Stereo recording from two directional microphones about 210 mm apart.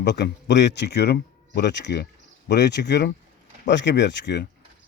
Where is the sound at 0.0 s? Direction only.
55° left (ahead or behind).